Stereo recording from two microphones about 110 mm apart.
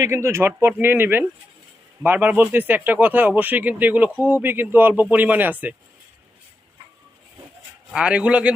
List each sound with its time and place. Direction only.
0.0 s speech: 25° right (ahead or behind)
7.9 s speech: 10° right (ahead or behind)